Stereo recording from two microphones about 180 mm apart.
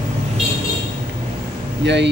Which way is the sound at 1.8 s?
75° right (ahead or behind).